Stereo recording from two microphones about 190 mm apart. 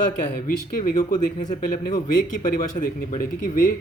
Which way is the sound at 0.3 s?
45° left (ahead or behind).